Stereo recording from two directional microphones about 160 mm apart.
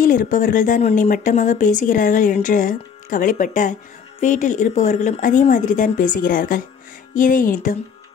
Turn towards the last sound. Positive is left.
turn(degrees=55)  # may be behind; listen again after turning